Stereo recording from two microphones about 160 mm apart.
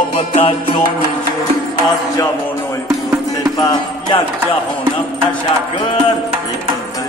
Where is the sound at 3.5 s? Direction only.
25° left (ahead or behind).